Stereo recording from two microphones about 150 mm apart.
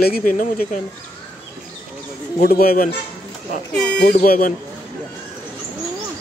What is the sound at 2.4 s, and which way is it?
Speech, 85° left.